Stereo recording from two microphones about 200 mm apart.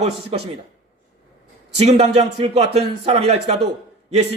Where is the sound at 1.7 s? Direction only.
30° right (ahead or behind).